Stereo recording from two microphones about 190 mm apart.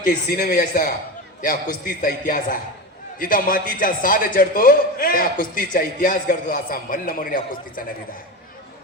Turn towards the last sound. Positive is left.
turn(degrees=50)  # may be behind; listen again after turning